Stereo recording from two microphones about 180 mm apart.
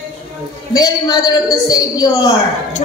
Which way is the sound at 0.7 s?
20° left (ahead or behind).